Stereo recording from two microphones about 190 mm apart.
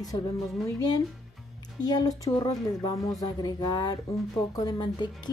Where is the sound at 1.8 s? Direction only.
20° left (ahead or behind).